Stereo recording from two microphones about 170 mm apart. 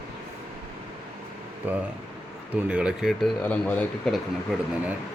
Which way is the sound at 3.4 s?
10° left (ahead or behind).